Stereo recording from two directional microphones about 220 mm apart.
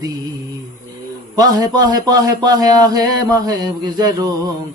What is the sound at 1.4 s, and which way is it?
Speech, 15° right (ahead or behind).